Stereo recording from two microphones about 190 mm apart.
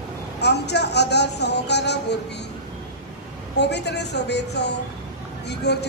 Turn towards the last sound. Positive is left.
turn(degrees=60)  # may be behind; listen again after turning